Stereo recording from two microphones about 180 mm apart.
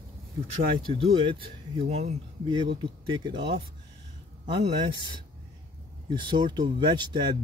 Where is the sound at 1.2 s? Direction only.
30° right (ahead or behind).